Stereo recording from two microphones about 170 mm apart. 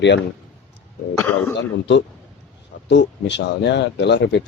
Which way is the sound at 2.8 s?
90° left.